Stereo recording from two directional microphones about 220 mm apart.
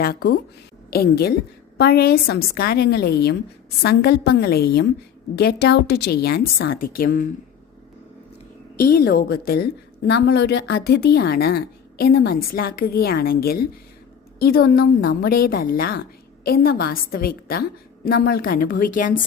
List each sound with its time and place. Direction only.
0.0 s a woman's voice: 45° left (ahead or behind)
8.7 s a woman's voice: 45° left (ahead or behind)